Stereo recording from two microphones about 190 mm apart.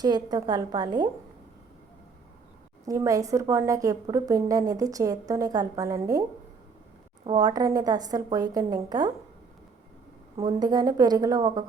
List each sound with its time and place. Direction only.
0.0 s a woman's voice: 20° right (ahead or behind)
2.8 s a woman's voice: 20° right (ahead or behind)
7.3 s a woman's voice: 20° right (ahead or behind)
10.3 s a woman's voice: 20° right (ahead or behind)